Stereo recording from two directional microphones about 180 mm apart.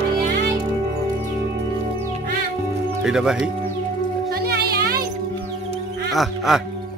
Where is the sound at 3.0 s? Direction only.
5° right (ahead or behind).